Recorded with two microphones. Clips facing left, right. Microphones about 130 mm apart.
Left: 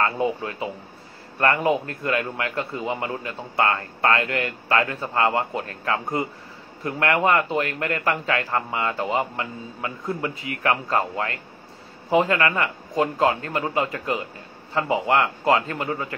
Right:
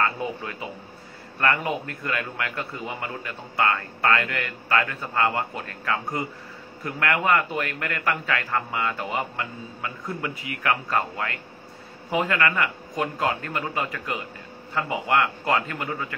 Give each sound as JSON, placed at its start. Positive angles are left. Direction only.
{"t": 0.0, "sound": "a man's voice", "side_deg": 25}